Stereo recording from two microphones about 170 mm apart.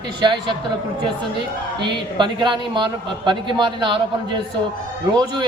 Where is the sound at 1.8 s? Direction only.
30° right (ahead or behind).